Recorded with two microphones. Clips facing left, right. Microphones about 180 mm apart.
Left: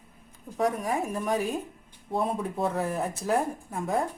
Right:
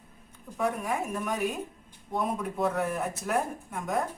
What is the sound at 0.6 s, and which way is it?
Speech, 35° left (ahead or behind).